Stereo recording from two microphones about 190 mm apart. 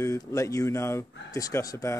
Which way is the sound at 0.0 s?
15° left (ahead or behind).